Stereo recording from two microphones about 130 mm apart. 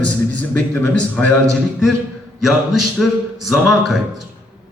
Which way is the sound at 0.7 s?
15° left (ahead or behind).